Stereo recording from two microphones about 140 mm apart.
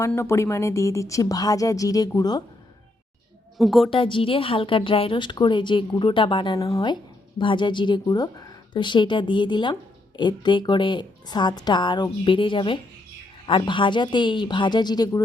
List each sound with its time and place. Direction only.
0.1 s speech: 20° left (ahead or behind)
3.6 s a woman's voice: centre (ahead or behind)
3.8 s a woman's voice: 35° left (ahead or behind)
6.6 s a woman's voice: 25° left (ahead or behind)